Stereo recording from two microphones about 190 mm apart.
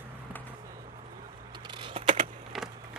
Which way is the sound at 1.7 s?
25° right (ahead or behind).